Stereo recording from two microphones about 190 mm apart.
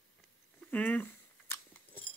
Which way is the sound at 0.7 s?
10° left (ahead or behind).